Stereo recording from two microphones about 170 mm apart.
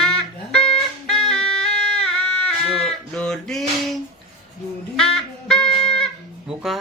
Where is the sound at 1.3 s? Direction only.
5° left (ahead or behind).